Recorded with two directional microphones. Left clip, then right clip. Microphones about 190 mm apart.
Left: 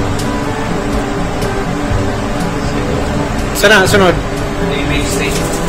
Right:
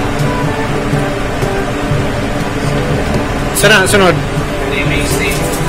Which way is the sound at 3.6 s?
Centre (ahead or behind).